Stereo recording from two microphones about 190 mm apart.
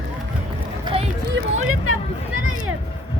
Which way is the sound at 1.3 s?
90° right.